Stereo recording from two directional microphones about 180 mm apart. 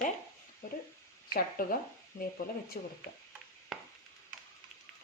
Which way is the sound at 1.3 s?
55° left (ahead or behind).